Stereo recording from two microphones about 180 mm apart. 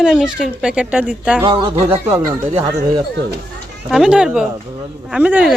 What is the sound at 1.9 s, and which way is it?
Speech, 15° right (ahead or behind).